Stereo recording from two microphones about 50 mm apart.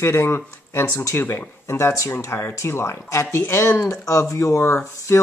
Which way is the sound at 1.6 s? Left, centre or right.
Left.